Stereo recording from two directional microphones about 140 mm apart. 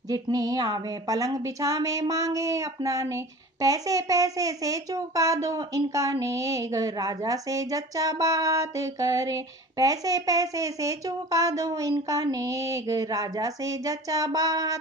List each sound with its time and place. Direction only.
0.1 s a child's voice: 25° right (ahead or behind)